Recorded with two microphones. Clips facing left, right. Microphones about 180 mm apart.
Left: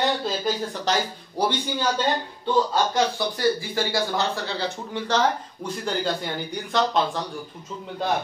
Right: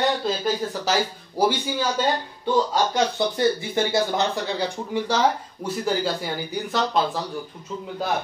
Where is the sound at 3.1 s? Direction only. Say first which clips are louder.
Right 2 dB; 25° right (ahead or behind); by 7.2 s 5° right (ahead or behind).